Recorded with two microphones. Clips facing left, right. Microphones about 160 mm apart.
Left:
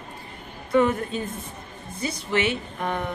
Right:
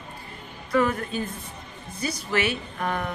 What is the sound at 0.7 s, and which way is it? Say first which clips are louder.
A man's voice: left 3 dB; 25° left (ahead or behind).